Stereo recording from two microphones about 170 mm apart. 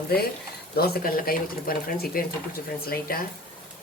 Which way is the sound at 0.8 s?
65° left (ahead or behind).